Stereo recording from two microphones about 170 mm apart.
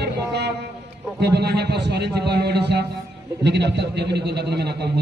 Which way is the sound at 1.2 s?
70° right (ahead or behind).